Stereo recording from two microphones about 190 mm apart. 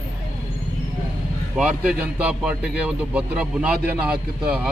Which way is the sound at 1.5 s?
5° right (ahead or behind).